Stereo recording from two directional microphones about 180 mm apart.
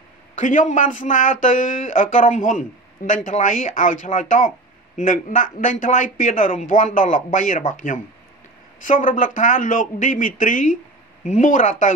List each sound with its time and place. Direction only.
0.4 s a man's voice: 45° left (ahead or behind)